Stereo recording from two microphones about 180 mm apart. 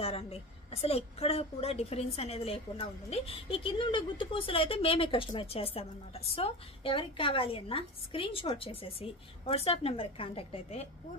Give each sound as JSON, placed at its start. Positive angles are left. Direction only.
{"t": 0.0, "sound": "a woman's voice", "side_deg": 35}